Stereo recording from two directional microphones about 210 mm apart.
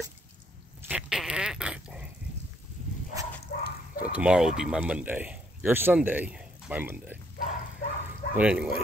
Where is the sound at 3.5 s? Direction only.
50° left (ahead or behind).